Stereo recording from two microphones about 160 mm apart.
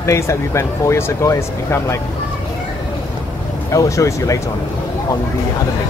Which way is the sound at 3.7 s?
20° left (ahead or behind).